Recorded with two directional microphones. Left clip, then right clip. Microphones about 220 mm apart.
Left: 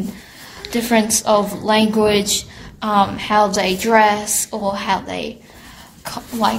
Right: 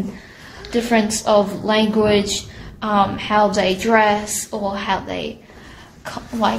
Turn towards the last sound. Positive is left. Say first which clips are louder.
# left 1 dB
turn(degrees=25)  # may be behind; listen again after turning